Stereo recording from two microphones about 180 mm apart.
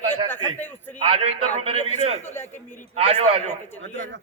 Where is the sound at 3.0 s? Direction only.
35° right (ahead or behind).